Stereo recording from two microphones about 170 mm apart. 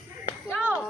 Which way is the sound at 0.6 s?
10° right (ahead or behind).